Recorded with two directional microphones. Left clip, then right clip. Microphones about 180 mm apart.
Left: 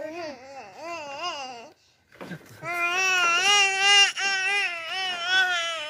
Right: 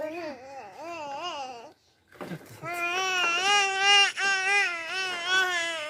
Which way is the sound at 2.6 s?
30° left (ahead or behind).